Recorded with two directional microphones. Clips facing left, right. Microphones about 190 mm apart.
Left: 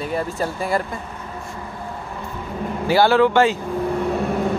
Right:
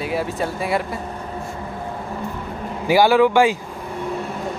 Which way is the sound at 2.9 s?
10° right (ahead or behind).